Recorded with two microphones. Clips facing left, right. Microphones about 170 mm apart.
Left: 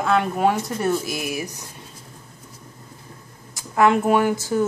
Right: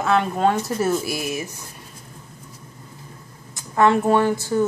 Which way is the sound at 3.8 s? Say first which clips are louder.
Even; 10° left (ahead or behind).